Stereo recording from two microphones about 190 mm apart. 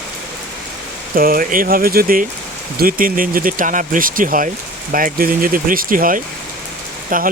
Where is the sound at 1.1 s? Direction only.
50° right (ahead or behind).